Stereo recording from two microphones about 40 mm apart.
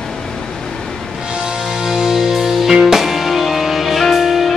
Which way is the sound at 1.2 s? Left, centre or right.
Centre.